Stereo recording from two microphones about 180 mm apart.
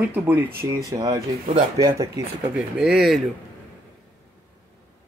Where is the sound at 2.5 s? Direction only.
5° right (ahead or behind).